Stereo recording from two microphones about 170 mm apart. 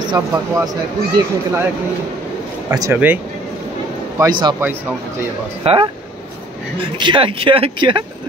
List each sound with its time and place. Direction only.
0.1 s speech: 15° right (ahead or behind)
2.7 s speech: 15° right (ahead or behind)
4.2 s speech: 25° right (ahead or behind)
5.6 s speech: 30° right (ahead or behind)
7.0 s speech: 30° right (ahead or behind)